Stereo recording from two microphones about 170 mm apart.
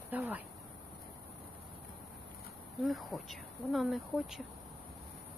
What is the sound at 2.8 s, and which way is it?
Speech, centre (ahead or behind).